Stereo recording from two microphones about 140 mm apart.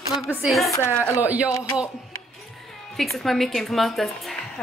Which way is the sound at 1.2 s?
10° right (ahead or behind).